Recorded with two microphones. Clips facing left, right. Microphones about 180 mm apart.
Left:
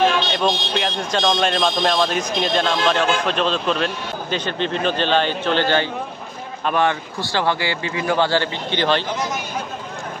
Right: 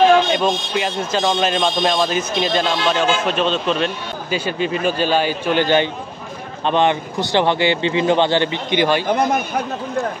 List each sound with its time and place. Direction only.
0.3 s speech: centre (ahead or behind)
9.1 s speech: 60° right (ahead or behind)